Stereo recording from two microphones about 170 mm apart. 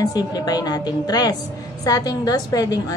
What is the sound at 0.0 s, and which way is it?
A woman's voice, 25° left (ahead or behind).